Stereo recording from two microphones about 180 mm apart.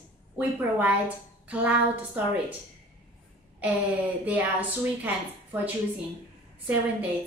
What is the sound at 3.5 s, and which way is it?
A woman's voice, 10° right (ahead or behind).